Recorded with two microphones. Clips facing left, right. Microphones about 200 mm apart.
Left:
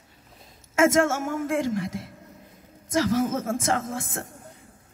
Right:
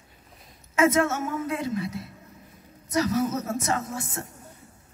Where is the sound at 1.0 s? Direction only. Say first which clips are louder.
Left 2 dB; 90° left.